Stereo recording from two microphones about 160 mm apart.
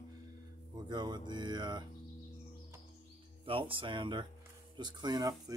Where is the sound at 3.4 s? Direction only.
35° right (ahead or behind).